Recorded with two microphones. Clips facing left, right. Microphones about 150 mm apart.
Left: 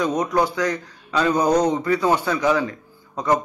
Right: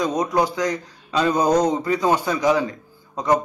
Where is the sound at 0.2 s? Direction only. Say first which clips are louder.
Even; 15° right (ahead or behind).